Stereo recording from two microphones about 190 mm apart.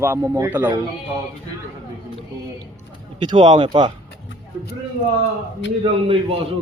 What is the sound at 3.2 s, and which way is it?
Speech, 20° right (ahead or behind).